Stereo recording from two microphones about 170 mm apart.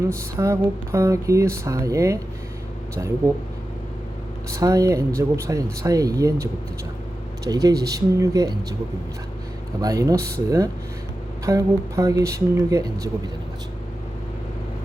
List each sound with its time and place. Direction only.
0.1 s speech: 15° right (ahead or behind)
4.5 s speech: 20° right (ahead or behind)
9.8 s speech: 20° right (ahead or behind)
11.4 s speech: 20° right (ahead or behind)